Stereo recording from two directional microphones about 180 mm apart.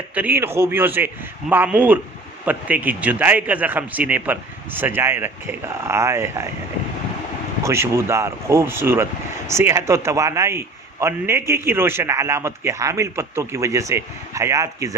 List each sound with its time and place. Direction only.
0.1 s a man's voice: 10° right (ahead or behind)
7.6 s a man's voice: 15° right (ahead or behind)